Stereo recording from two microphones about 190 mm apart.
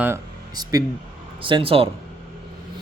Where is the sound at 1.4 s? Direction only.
25° right (ahead or behind).